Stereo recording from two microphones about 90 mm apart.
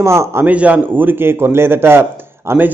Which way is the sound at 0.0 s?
30° right (ahead or behind).